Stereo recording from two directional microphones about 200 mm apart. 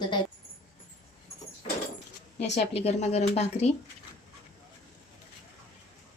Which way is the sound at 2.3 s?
35° left (ahead or behind).